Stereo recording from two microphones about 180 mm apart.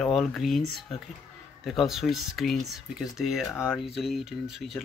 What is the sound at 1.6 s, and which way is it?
Speech, centre (ahead or behind).